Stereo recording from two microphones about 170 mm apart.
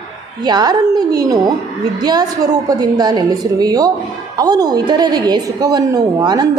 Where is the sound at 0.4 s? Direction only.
25° right (ahead or behind).